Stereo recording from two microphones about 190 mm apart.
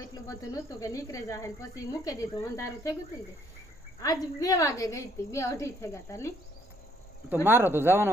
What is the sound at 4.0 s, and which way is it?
Speech, 20° left (ahead or behind).